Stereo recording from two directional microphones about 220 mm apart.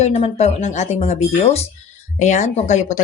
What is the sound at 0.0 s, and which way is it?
A woman's voice, 30° left (ahead or behind).